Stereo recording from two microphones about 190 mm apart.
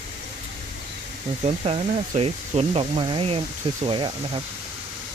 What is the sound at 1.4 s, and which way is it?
Speech, 35° right (ahead or behind).